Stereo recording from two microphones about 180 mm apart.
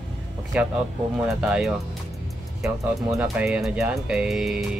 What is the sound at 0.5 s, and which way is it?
Speech, 5° right (ahead or behind).